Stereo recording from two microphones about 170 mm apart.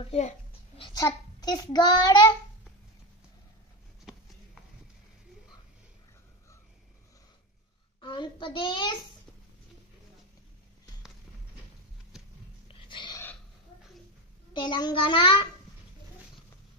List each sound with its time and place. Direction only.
0.0 s a child's voice: 35° left (ahead or behind)
0.7 s a sound: 30° left (ahead or behind)
1.0 s a child's voice: 25° left (ahead or behind)
8.0 s a child's voice: 25° left (ahead or behind)
12.8 s dog: 30° left (ahead or behind)
14.5 s a child's voice: 25° left (ahead or behind)